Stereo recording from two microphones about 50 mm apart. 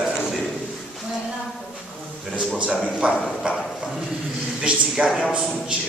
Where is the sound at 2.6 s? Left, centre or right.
Right.